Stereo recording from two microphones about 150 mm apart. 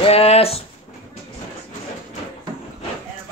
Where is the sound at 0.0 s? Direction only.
40° left (ahead or behind).